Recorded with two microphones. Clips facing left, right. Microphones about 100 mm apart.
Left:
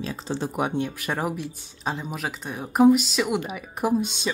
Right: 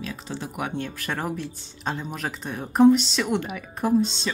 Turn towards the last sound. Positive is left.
turn(degrees=10)  # may be behind; listen again after turning